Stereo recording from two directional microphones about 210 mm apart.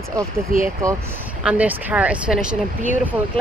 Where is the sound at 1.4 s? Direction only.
5° right (ahead or behind).